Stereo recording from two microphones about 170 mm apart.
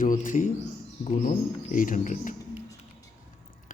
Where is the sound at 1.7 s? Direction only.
50° left (ahead or behind).